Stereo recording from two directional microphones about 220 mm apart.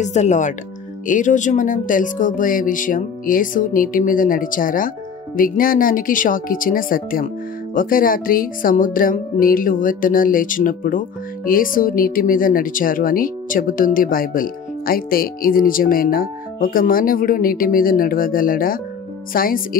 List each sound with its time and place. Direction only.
0.0 s speech: 30° left (ahead or behind)